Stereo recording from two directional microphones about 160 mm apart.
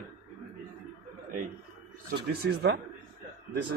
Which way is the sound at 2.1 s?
90° right.